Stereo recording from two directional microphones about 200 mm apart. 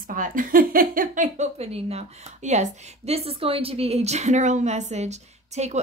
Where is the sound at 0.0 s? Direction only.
45° right (ahead or behind).